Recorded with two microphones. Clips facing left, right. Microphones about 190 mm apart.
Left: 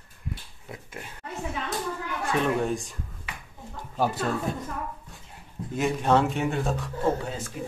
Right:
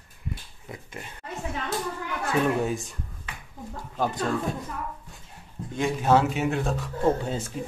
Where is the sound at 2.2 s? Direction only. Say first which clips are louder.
Right 1 dB; 5° right (ahead or behind).